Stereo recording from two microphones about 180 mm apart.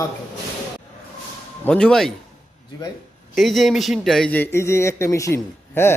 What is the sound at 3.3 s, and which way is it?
Speech, centre (ahead or behind).